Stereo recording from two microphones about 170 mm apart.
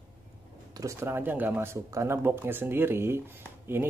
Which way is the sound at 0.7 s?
20° right (ahead or behind).